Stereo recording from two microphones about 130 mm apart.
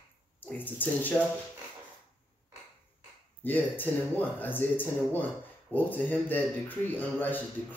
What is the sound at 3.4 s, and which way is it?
Speech, 15° left (ahead or behind).